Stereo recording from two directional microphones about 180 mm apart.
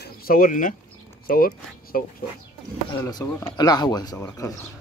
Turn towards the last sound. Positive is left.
turn(degrees=20)  # may be behind; listen again after turning